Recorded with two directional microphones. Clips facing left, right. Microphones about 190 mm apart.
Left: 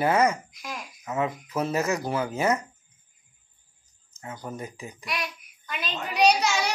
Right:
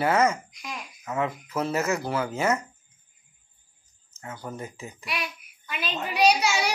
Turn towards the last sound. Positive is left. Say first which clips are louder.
# even
turn(degrees=-5)  # may be behind; listen again after turning